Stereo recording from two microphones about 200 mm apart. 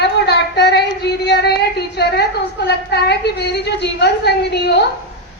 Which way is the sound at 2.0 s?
55° left (ahead or behind).